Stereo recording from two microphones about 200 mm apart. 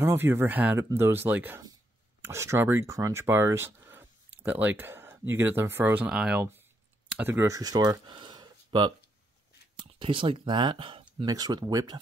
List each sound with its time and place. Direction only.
0.0 s speech: 10° right (ahead or behind)